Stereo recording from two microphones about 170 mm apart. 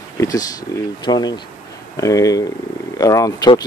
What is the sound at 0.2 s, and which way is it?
Speech, 20° left (ahead or behind).